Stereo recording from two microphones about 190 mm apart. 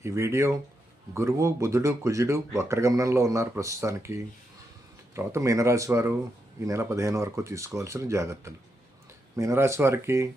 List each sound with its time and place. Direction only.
0.0 s speech: 15° right (ahead or behind)